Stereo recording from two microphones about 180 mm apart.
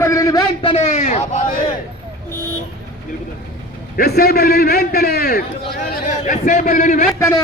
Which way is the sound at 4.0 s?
60° left (ahead or behind).